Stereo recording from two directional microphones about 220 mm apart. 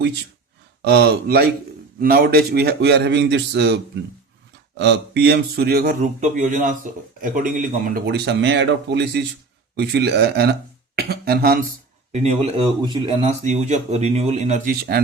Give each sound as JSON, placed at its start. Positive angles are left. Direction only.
{"t": 0.9, "sound": "speech", "side_deg": -45}
{"t": 4.8, "sound": "speech", "side_deg": -50}
{"t": 12.1, "sound": "speech", "side_deg": -30}